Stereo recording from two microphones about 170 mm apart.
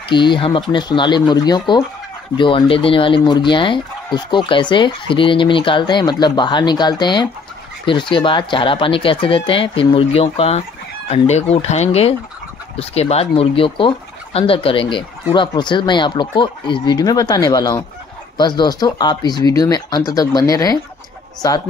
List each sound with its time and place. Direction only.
0.1 s speech: 30° left (ahead or behind)